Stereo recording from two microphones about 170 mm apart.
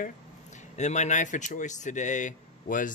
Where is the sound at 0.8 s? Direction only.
45° left (ahead or behind).